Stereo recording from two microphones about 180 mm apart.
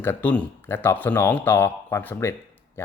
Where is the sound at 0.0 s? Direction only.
10° left (ahead or behind).